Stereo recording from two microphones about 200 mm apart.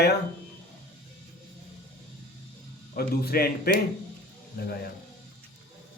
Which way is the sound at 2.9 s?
50° left (ahead or behind).